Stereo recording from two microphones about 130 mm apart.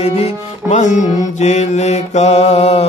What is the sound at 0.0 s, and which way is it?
Music, 55° left (ahead or behind).